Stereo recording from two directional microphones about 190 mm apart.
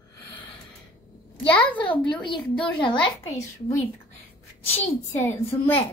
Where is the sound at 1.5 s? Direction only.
10° left (ahead or behind).